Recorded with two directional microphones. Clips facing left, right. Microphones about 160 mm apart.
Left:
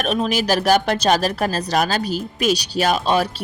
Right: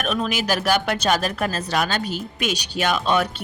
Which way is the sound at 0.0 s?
30° left (ahead or behind).